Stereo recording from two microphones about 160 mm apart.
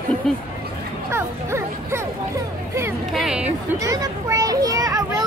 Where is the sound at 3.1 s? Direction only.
5° right (ahead or behind).